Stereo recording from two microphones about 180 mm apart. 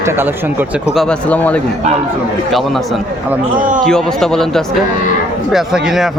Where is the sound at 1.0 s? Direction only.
5° left (ahead or behind).